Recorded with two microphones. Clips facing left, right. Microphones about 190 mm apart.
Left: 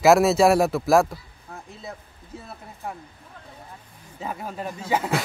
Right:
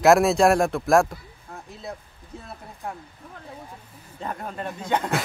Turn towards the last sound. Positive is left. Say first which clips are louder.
# left 1 dB
turn(degrees=5)  # may be behind; listen again after turning